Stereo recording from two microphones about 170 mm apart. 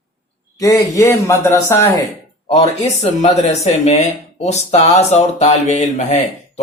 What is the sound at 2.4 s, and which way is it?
Speech, 35° left (ahead or behind).